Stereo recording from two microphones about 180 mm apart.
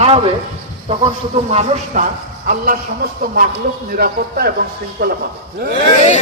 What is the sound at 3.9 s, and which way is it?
A man's voice, 55° right (ahead or behind).